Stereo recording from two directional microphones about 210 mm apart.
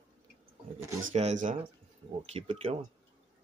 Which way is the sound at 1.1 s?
35° right (ahead or behind).